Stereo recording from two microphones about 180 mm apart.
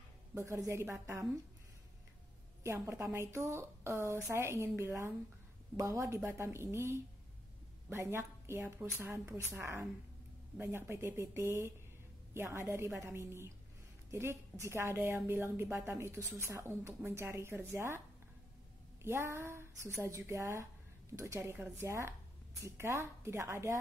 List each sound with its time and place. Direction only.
0.3 s a woman's voice: 15° right (ahead or behind)
2.6 s a woman's voice: 15° right (ahead or behind)
19.0 s a woman's voice: 15° right (ahead or behind)